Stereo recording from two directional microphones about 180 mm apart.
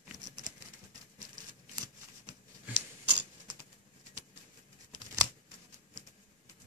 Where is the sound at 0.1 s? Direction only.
45° right (ahead or behind).